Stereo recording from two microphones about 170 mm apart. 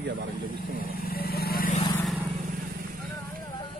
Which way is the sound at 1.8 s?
20° left (ahead or behind).